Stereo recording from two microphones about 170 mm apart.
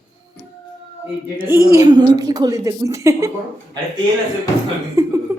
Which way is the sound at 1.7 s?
25° right (ahead or behind).